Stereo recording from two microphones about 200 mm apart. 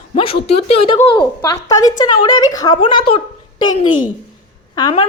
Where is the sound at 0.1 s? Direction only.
30° left (ahead or behind).